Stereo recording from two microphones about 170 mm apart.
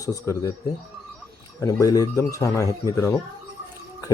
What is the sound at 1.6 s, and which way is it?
Speech, 20° left (ahead or behind).